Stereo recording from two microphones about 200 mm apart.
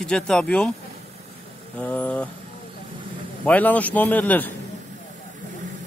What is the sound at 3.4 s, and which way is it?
A man's voice, 5° left (ahead or behind).